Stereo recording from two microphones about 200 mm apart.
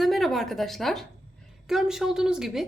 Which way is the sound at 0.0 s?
Centre (ahead or behind).